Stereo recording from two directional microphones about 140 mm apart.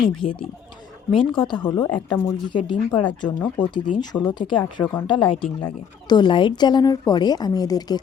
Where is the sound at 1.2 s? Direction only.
35° left (ahead or behind).